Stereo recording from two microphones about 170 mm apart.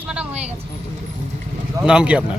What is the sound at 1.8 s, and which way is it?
Speech, 5° right (ahead or behind).